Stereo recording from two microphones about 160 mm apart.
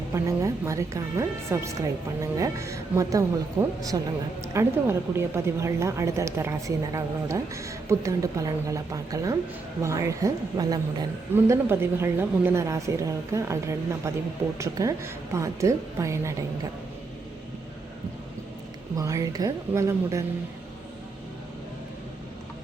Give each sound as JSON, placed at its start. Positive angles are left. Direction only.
{"t": 0.1, "sound": "a woman's voice", "side_deg": -20}
{"t": 18.9, "sound": "a woman's voice", "side_deg": -20}